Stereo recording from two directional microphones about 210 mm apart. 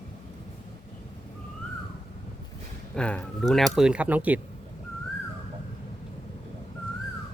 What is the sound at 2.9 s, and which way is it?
Speech, 5° left (ahead or behind).